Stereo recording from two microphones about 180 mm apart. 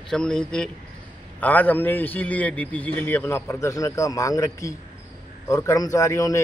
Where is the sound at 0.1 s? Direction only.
5° left (ahead or behind).